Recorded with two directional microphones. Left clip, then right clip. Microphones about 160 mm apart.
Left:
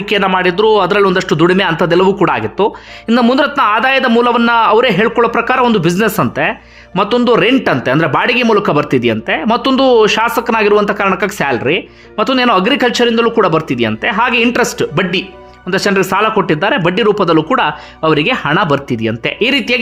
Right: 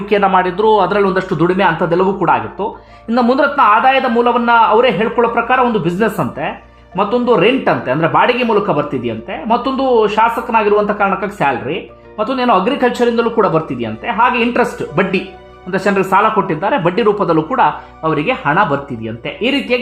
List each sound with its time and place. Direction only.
0.1 s speech: 15° left (ahead or behind)